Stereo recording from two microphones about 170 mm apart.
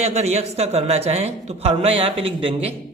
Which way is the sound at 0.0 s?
40° right (ahead or behind).